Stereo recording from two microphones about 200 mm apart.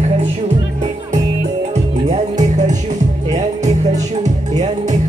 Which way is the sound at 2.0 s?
35° right (ahead or behind).